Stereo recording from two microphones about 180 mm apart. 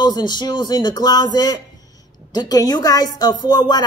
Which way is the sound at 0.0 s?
25° left (ahead or behind).